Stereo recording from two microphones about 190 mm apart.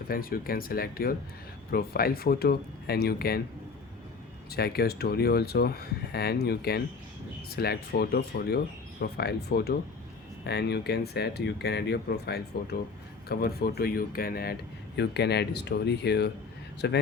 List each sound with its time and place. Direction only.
0.1 s speech: 50° left (ahead or behind)
4.5 s speech: 55° left (ahead or behind)